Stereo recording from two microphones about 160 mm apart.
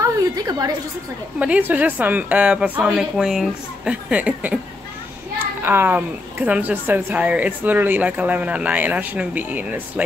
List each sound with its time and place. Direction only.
0.0 s a sound: 25° right (ahead or behind)
1.4 s a woman's voice: 10° right (ahead or behind)
5.6 s a woman's voice: 10° right (ahead or behind)